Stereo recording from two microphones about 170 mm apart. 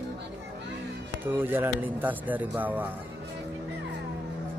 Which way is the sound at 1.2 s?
10° right (ahead or behind).